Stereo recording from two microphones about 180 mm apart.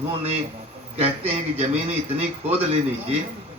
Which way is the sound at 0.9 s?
35° right (ahead or behind).